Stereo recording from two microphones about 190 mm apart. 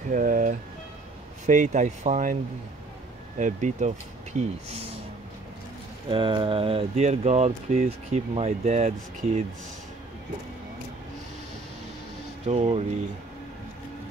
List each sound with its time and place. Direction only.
0.1 s speech: 45° right (ahead or behind)
3.3 s speech: 40° right (ahead or behind)
6.0 s speech: 25° right (ahead or behind)
12.4 s speech: 35° right (ahead or behind)